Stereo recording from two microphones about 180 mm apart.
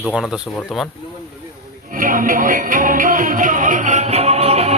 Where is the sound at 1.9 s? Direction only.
50° right (ahead or behind).